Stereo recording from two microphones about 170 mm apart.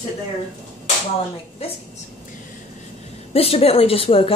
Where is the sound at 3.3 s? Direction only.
35° left (ahead or behind).